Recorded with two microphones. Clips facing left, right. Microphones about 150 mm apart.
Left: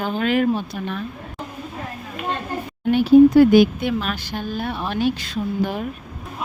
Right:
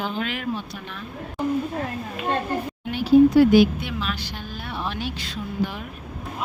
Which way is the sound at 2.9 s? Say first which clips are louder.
Left 4 dB; 55° left (ahead or behind).